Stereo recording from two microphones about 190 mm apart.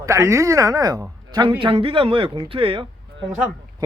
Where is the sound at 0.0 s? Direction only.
15° right (ahead or behind).